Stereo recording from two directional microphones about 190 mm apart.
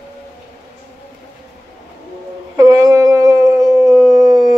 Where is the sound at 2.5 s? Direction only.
15° right (ahead or behind).